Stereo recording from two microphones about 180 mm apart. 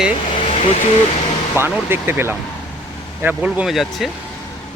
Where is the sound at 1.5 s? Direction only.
10° right (ahead or behind).